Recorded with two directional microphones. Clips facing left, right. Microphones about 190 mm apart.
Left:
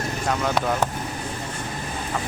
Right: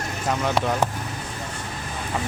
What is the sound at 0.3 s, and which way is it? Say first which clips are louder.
Speech: right 1 dB; 5° right (ahead or behind).